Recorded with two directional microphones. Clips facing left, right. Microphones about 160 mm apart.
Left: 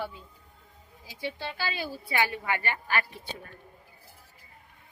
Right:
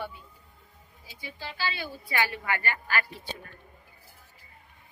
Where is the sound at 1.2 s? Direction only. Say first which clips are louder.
Left 9 dB; 75° left (ahead or behind).